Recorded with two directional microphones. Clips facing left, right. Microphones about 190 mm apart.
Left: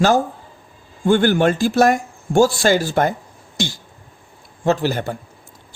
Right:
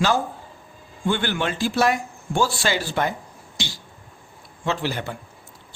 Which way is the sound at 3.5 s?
50° left (ahead or behind).